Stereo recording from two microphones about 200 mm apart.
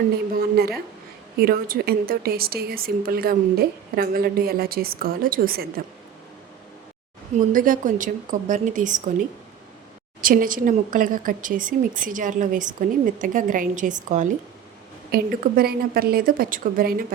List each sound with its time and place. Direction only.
0.3 s a woman's voice: 50° right (ahead or behind)
7.5 s a woman's voice: 40° right (ahead or behind)
15.1 s a woman's voice: 50° right (ahead or behind)